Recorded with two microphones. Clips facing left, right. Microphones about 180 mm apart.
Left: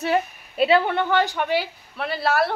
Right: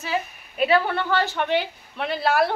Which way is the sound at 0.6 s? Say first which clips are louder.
Left 2 dB; 25° left (ahead or behind).